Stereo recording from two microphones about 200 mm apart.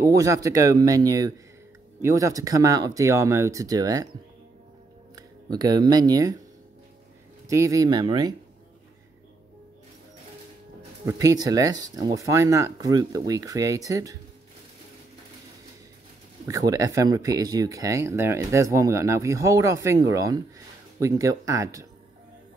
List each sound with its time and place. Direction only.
0.0 s speech: 15° right (ahead or behind)
5.1 s speech: 20° right (ahead or behind)
7.4 s speech: 15° right (ahead or behind)
11.1 s speech: 15° right (ahead or behind)
16.4 s speech: 15° right (ahead or behind)